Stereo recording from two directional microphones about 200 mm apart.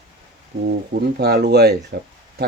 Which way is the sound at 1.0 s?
55° right (ahead or behind).